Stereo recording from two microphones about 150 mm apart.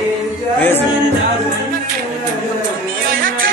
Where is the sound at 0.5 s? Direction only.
15° left (ahead or behind).